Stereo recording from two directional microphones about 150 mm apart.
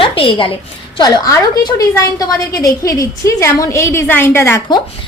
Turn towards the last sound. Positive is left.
turn(degrees=15)  # may be behind; listen again after turning